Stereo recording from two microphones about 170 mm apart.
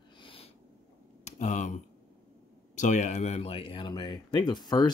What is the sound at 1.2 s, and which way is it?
Speech, 45° left (ahead or behind).